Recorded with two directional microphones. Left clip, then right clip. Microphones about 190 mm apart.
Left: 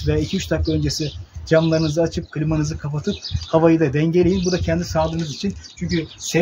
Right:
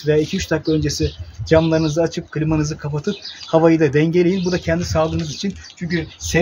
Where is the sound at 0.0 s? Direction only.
15° right (ahead or behind).